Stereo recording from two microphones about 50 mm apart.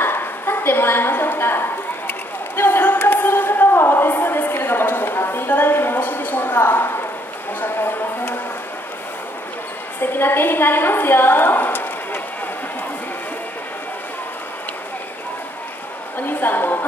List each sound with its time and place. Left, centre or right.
0.0 s a sound: left
7.6 s music: left
9.9 s a woman's voice: left
16.3 s a woman's voice: left